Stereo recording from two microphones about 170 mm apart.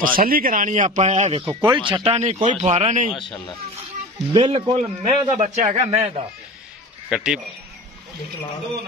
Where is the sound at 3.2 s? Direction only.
25° left (ahead or behind).